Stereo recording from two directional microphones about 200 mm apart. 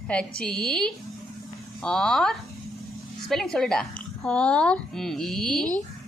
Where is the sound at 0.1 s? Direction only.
5° left (ahead or behind).